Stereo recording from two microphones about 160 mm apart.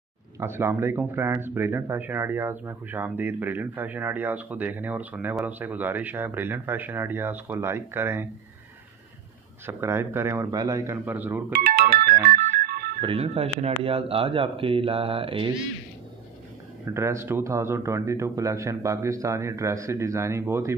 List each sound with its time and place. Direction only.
0.4 s speech: 15° right (ahead or behind)
9.7 s speech: 15° right (ahead or behind)
11.6 s music: 80° right
13.0 s speech: 35° right (ahead or behind)
16.8 s speech: 20° right (ahead or behind)